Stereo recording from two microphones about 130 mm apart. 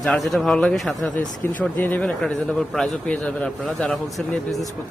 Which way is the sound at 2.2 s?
Centre (ahead or behind).